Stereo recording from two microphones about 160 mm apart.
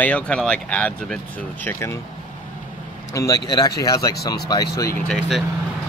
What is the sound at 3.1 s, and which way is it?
A man's voice, 20° left (ahead or behind).